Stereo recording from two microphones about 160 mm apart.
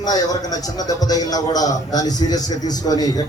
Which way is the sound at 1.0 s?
25° left (ahead or behind).